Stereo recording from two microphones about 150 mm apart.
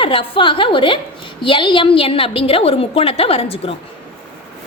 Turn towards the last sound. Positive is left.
turn(degrees=40)  # may be behind; listen again after turning